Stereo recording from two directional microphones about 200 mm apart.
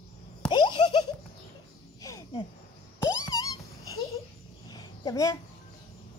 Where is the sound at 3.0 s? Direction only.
15° left (ahead or behind).